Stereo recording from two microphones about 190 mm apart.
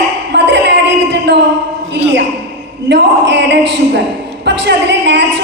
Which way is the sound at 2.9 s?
65° right (ahead or behind).